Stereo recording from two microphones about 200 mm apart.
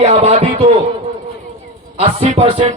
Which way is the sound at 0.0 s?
30° right (ahead or behind).